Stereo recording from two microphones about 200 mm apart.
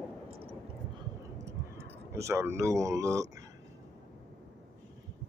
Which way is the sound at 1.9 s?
15° right (ahead or behind).